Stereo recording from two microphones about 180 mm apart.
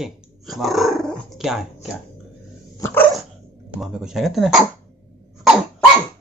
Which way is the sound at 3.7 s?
5° right (ahead or behind).